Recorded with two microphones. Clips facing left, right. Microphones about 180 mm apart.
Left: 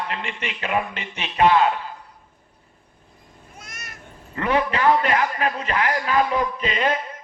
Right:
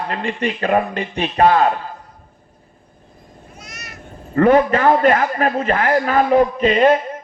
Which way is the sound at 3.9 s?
50° right (ahead or behind).